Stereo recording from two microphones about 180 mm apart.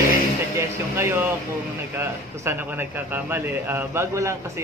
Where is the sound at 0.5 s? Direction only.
15° right (ahead or behind).